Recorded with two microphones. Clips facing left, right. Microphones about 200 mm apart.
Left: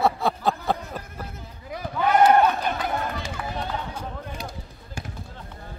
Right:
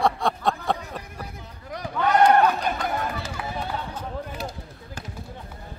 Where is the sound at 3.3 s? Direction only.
10° right (ahead or behind).